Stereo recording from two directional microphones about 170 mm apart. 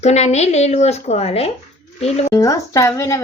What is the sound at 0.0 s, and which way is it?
A woman's voice, 40° left (ahead or behind).